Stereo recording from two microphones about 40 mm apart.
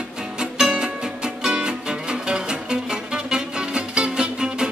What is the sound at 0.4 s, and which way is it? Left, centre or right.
Music, centre.